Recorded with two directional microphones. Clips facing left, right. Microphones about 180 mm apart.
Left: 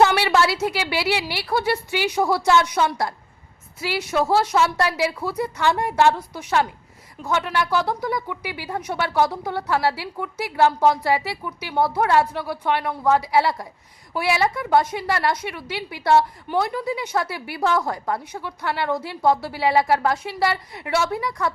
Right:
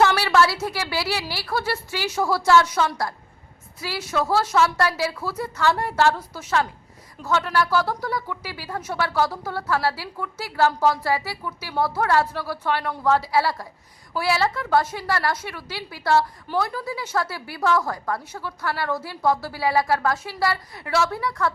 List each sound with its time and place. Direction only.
0.0 s a woman's voice: 20° left (ahead or behind)